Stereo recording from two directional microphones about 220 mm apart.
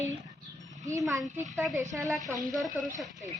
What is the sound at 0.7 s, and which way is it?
A child's voice, 15° right (ahead or behind).